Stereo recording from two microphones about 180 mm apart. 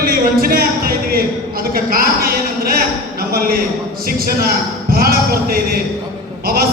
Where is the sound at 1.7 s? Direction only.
55° right (ahead or behind).